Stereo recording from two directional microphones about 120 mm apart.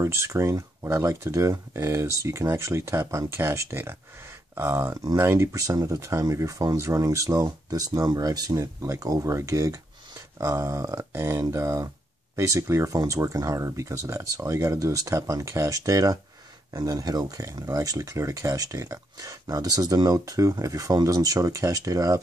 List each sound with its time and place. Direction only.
0.0 s speech: 25° right (ahead or behind)